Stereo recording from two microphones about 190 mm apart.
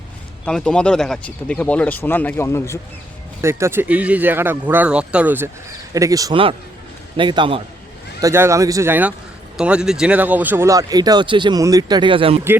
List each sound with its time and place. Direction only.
0.4 s speech: 5° left (ahead or behind)
3.4 s speech: 15° right (ahead or behind)
8.2 s speech: 15° right (ahead or behind)